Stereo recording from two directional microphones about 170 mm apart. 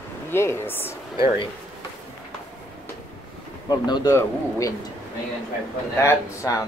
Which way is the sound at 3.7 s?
20° left (ahead or behind).